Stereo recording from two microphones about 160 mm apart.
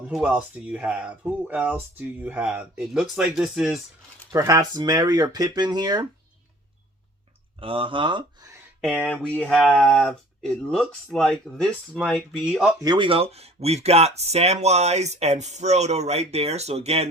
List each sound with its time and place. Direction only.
0.1 s speech: 5° right (ahead or behind)
4.3 s speech: 20° right (ahead or behind)
7.6 s speech: 35° right (ahead or behind)
8.8 s speech: 5° left (ahead or behind)
12.8 s speech: 30° right (ahead or behind)